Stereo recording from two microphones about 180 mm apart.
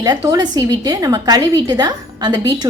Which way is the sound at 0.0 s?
20° right (ahead or behind).